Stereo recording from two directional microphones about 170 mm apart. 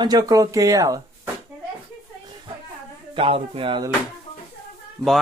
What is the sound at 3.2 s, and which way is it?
Speech, 30° right (ahead or behind).